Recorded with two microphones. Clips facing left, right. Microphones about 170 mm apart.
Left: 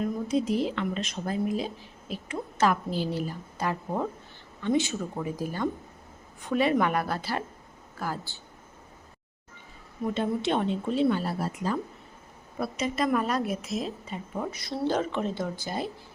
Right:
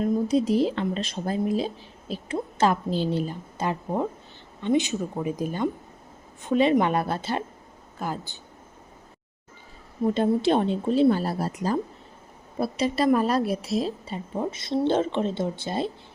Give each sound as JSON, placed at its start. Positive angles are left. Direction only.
{"t": 0.0, "sound": "speech", "side_deg": -35}
{"t": 10.0, "sound": "speech", "side_deg": -35}